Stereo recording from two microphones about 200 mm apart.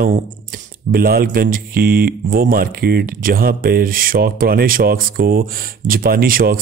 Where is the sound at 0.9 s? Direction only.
50° right (ahead or behind).